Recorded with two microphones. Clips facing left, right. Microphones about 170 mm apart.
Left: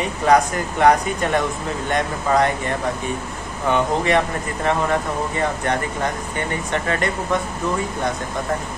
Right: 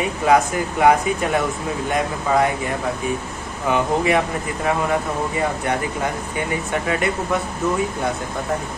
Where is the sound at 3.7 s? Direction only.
5° right (ahead or behind).